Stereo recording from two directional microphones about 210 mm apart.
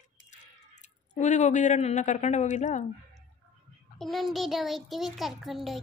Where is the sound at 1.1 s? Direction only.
35° left (ahead or behind).